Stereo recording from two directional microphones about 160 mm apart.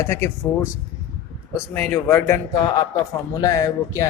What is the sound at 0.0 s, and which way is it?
Speech, 15° left (ahead or behind).